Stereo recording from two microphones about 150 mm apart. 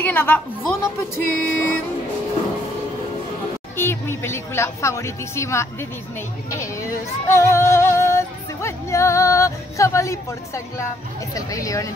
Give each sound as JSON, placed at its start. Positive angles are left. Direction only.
{"t": 0.0, "sound": "speech", "side_deg": 10}
{"t": 3.7, "sound": "speech", "side_deg": 15}
{"t": 6.6, "sound": "female singing", "side_deg": 20}
{"t": 11.3, "sound": "speech", "side_deg": 20}